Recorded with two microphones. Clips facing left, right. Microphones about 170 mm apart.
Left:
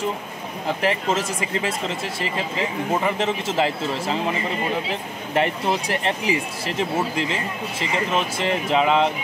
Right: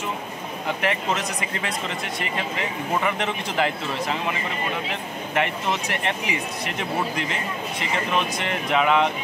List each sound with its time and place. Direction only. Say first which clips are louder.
0.8 s speech: left 3 dB; 30° left (ahead or behind)
5.3 s speech: left 3 dB; 35° left (ahead or behind)
8.4 s speech: left 3 dB; 25° left (ahead or behind)